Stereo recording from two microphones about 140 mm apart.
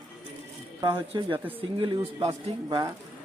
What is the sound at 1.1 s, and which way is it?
Speech, 35° right (ahead or behind).